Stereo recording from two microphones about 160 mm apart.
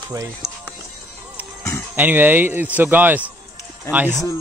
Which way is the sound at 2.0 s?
10° right (ahead or behind).